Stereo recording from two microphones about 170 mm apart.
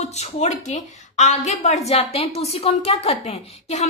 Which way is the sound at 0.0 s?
40° left (ahead or behind).